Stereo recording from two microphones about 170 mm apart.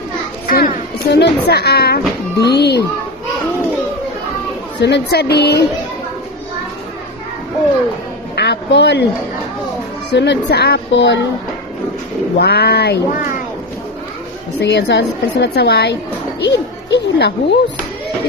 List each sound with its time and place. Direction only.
0.4 s children playing: 55° left (ahead or behind)
1.1 s speech: 80° left
4.8 s speech: 75° left (ahead or behind)
8.4 s a sound: 85° left
10.1 s speech: 85° left
12.4 s speech: 70° left (ahead or behind)
14.6 s a woman's voice: 90° left